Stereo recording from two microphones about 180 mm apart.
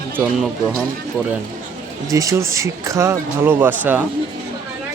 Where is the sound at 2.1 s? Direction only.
20° right (ahead or behind).